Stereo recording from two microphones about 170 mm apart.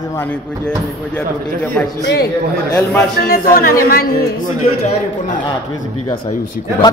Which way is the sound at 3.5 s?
60° left (ahead or behind).